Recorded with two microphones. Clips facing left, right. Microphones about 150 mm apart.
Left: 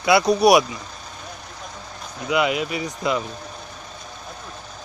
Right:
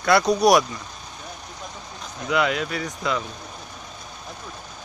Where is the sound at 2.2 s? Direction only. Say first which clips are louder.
Left 2 dB; 10° left (ahead or behind).